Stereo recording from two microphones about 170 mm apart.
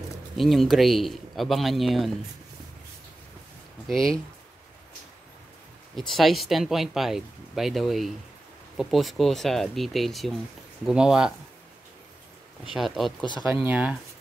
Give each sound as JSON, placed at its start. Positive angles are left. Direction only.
{"t": 0.4, "sound": "speech", "side_deg": 0}
{"t": 3.8, "sound": "speech", "side_deg": 5}
{"t": 5.9, "sound": "speech", "side_deg": 0}
{"t": 12.6, "sound": "speech", "side_deg": 0}
{"t": 13.2, "sound": "speech", "side_deg": 25}
{"t": 13.7, "sound": "speech", "side_deg": -10}